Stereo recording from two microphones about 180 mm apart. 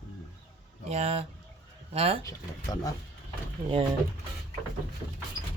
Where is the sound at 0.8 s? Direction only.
35° right (ahead or behind).